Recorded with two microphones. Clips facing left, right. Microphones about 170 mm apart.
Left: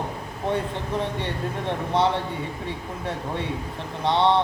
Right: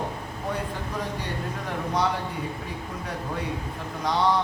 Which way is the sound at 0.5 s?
25° left (ahead or behind).